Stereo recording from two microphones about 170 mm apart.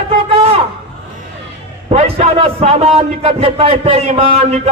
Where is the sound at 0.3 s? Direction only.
35° right (ahead or behind).